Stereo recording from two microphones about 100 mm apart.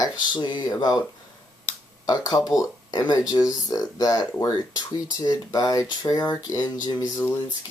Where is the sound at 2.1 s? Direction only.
40° left (ahead or behind).